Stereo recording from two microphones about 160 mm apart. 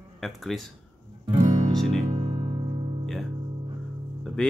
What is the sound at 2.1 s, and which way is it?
Music, 25° right (ahead or behind).